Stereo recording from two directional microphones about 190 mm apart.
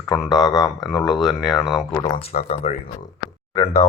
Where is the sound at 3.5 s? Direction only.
15° left (ahead or behind).